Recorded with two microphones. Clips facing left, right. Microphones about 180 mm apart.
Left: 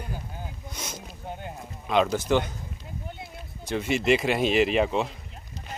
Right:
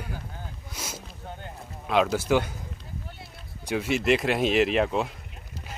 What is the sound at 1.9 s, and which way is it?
Speech, 5° right (ahead or behind).